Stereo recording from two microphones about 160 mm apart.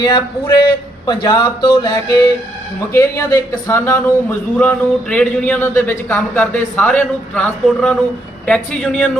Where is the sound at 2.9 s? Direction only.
15° left (ahead or behind).